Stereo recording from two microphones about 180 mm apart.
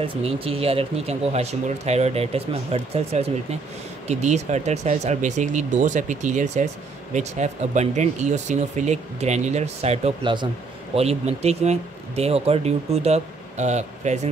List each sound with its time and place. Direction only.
0.0 s speech: 30° right (ahead or behind)
11.0 s speech: 35° right (ahead or behind)